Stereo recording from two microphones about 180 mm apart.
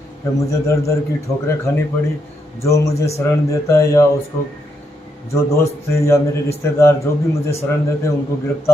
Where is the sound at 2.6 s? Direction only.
15° left (ahead or behind).